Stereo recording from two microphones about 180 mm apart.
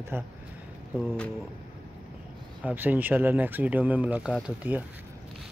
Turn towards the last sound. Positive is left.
turn(degrees=-5)  # may be behind; listen again after turning